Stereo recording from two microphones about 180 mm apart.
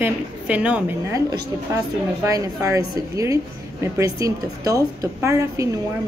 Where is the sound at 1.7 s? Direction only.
15° right (ahead or behind).